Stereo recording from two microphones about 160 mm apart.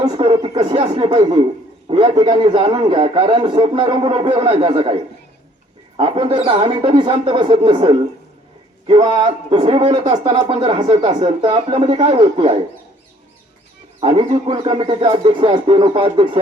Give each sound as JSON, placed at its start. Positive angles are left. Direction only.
{"t": 0.0, "sound": "a man's voice", "side_deg": -35}
{"t": 6.0, "sound": "a man's voice", "side_deg": -30}
{"t": 9.0, "sound": "a man's voice", "side_deg": -30}
{"t": 10.5, "sound": "a man's voice", "side_deg": -30}
{"t": 14.0, "sound": "a man's voice", "side_deg": -35}